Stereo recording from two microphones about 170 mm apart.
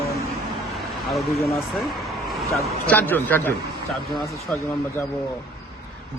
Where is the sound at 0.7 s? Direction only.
Centre (ahead or behind).